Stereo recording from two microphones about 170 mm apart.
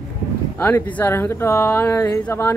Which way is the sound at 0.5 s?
10° left (ahead or behind).